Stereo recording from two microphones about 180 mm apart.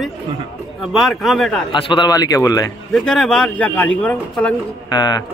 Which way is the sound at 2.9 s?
5° left (ahead or behind).